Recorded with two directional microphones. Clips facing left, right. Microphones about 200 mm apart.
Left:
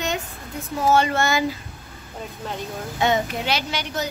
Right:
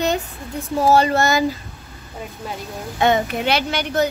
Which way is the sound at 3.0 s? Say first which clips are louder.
Right 4 dB; 55° right (ahead or behind).